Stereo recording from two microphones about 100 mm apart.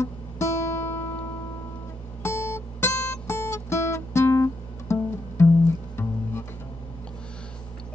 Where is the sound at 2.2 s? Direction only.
30° left (ahead or behind).